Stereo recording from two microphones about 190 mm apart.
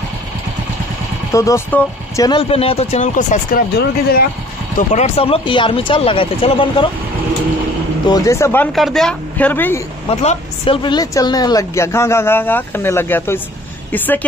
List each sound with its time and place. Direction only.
1.3 s speech: 15° left (ahead or behind)
2.2 s speech: 30° left (ahead or behind)
3.7 s speech: 55° left (ahead or behind)
4.7 s speech: 35° left (ahead or behind)
8.1 s speech: 15° left (ahead or behind)
8.7 s speech: centre (ahead or behind)
10.0 s speech: 30° left (ahead or behind); by 14.2 s 10° left (ahead or behind)